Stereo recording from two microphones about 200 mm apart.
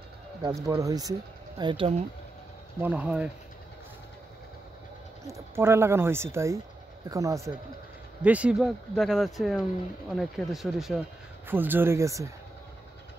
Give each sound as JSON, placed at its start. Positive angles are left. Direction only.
{"t": 0.4, "sound": "speech", "side_deg": -20}
{"t": 2.8, "sound": "speech", "side_deg": -5}
{"t": 5.2, "sound": "speech", "side_deg": -15}